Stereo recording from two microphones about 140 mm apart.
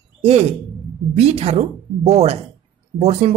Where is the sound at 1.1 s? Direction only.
50° right (ahead or behind).